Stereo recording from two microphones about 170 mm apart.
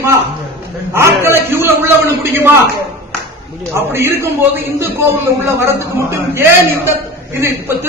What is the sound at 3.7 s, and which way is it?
A man's voice, 15° right (ahead or behind).